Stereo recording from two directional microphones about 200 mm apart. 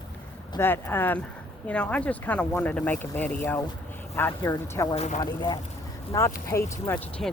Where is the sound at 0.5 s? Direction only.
10° left (ahead or behind).